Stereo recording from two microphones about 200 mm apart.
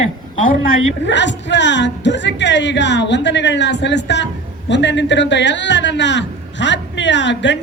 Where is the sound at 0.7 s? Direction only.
65° left (ahead or behind).